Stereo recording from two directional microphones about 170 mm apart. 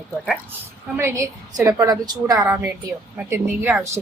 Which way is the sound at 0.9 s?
15° right (ahead or behind).